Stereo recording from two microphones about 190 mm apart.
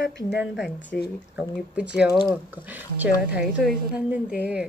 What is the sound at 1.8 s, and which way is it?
A woman's voice, 5° right (ahead or behind).